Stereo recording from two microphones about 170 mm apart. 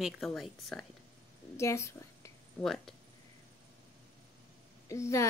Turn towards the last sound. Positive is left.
turn(degrees=15)  # may be behind; listen again after turning